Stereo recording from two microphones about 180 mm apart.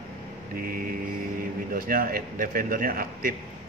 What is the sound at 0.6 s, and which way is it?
A man's voice, 55° right (ahead or behind).